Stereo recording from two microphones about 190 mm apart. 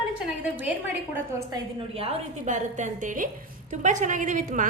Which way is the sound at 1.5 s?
30° right (ahead or behind).